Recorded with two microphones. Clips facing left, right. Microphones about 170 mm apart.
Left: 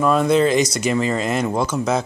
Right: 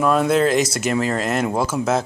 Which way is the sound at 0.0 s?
Centre (ahead or behind).